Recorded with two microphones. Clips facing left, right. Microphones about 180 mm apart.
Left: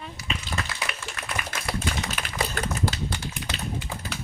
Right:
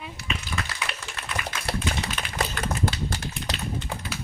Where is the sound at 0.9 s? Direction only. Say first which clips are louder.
Even; 30° right (ahead or behind).